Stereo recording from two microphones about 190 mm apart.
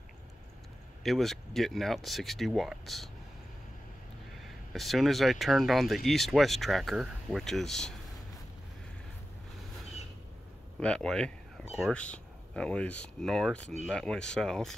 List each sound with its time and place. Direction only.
1.0 s speech: centre (ahead or behind)
4.7 s speech: centre (ahead or behind)
10.8 s speech: 5° left (ahead or behind)